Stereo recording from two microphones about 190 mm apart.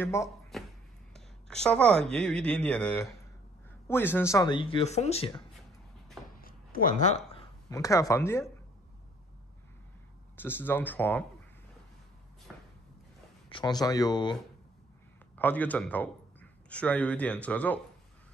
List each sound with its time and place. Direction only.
0.0 s speech: 15° left (ahead or behind)
0.5 s a sound: centre (ahead or behind)
1.1 s speech: 5° left (ahead or behind); by 5.3 s 35° left (ahead or behind)
6.3 s a sound: 50° left (ahead or behind)
7.7 s speech: 15° left (ahead or behind)
10.3 s speech: 10° left (ahead or behind)
12.5 s a sound: centre (ahead or behind)
13.5 s speech: 25° left (ahead or behind)
15.3 s a man's voice: 10° left (ahead or behind)